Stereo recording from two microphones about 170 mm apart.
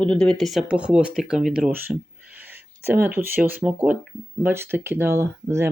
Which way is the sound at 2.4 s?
10° right (ahead or behind).